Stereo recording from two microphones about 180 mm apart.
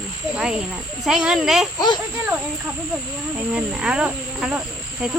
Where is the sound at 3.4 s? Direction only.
5° right (ahead or behind).